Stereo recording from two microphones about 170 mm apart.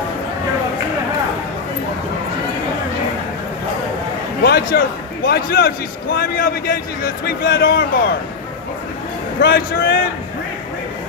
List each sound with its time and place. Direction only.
4.4 s a man's voice: 65° left (ahead or behind)
9.4 s a man's voice: 60° left (ahead or behind)